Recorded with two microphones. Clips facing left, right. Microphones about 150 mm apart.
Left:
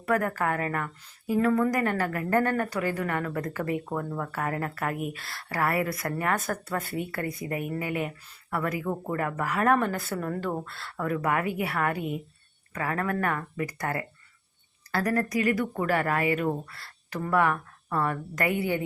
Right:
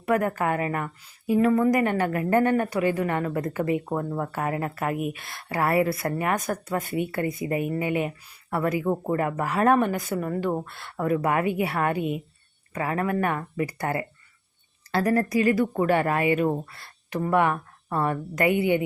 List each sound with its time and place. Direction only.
0.0 s a woman's voice: 20° right (ahead or behind)